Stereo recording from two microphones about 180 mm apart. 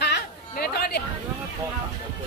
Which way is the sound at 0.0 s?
65° left (ahead or behind).